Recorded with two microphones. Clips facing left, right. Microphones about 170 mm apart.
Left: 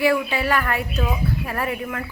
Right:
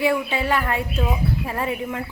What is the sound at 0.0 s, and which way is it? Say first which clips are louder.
Speech: left 1 dB; 25° right (ahead or behind).